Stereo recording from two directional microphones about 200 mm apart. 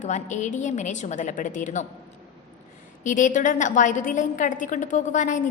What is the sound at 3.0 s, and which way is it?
A woman's voice, 40° left (ahead or behind).